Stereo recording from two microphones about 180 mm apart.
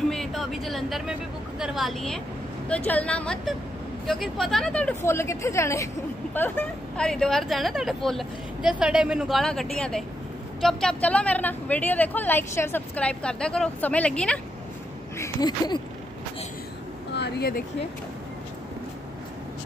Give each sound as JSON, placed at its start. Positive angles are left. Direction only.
{"t": 0.1, "sound": "a woman's voice", "side_deg": 0}
{"t": 15.1, "sound": "speech", "side_deg": 20}
{"t": 17.1, "sound": "speech", "side_deg": 65}